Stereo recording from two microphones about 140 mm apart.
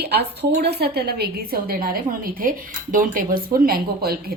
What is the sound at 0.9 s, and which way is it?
A woman's voice, 90° right.